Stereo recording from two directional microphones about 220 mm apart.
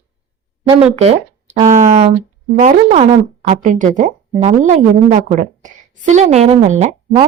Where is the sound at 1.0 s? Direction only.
30° right (ahead or behind).